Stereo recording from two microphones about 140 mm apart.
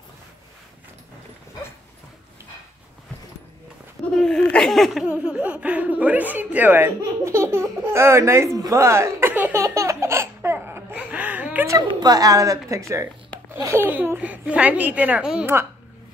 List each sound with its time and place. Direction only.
4.1 s speech: 5° left (ahead or behind); by 6.9 s 10° right (ahead or behind)
7.0 s baby laughter: 20° right (ahead or behind)
11.9 s a woman's voice: 30° right (ahead or behind); by 15.5 s 5° right (ahead or behind)